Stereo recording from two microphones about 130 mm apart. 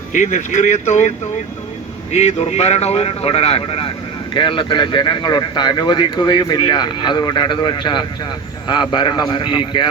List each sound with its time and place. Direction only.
0.1 s speech: 70° left (ahead or behind)
2.1 s speech: 60° left (ahead or behind); by 9.9 s 40° left (ahead or behind)